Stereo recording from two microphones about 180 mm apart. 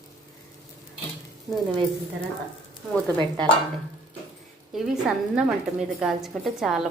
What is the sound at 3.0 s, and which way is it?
Stir, 25° right (ahead or behind).